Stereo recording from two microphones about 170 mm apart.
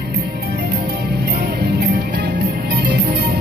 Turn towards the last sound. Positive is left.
turn(degrees=-80)